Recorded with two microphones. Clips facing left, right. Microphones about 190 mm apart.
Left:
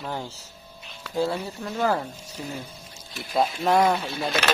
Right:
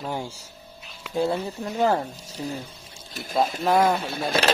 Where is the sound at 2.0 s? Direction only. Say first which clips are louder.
Right 2 dB; 35° right (ahead or behind).